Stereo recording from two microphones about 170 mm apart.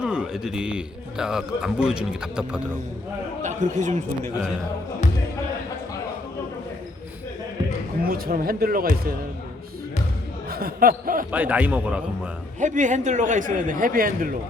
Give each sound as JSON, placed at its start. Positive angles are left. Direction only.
{"t": 0.0, "sound": "a man's voice", "side_deg": -5}
{"t": 3.4, "sound": "speech", "side_deg": -45}
{"t": 8.0, "sound": "speech", "side_deg": -60}
{"t": 10.5, "sound": "speech", "side_deg": -60}
{"t": 11.3, "sound": "a man's voice", "side_deg": -10}
{"t": 12.5, "sound": "speech", "side_deg": -45}